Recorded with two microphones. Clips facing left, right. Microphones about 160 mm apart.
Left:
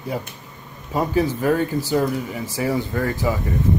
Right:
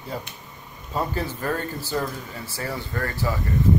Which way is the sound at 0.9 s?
15° left (ahead or behind).